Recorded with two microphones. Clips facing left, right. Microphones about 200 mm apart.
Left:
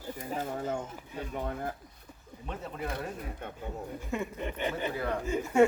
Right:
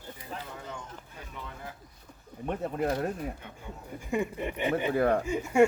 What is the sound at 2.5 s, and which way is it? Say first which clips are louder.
Speech: right 7 dB; 55° right (ahead or behind).